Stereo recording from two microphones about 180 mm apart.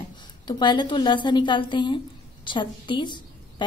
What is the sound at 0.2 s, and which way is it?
A woman's voice, 25° left (ahead or behind).